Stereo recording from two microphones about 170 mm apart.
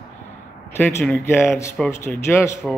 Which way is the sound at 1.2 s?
15° left (ahead or behind).